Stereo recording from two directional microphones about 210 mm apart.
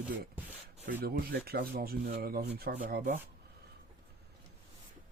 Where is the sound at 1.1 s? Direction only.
45° right (ahead or behind).